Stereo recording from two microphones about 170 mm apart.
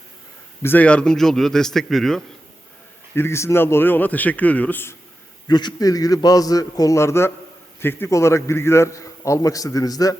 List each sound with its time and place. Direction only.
0.6 s a man's voice: 10° left (ahead or behind)
3.2 s a man's voice: 15° left (ahead or behind)
5.5 s a man's voice: 25° left (ahead or behind)